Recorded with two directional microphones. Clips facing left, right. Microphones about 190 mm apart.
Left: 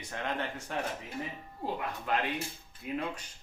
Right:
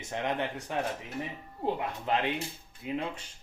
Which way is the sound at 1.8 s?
20° right (ahead or behind).